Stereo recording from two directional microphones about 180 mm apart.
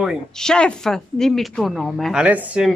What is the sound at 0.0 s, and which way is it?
Speech, centre (ahead or behind).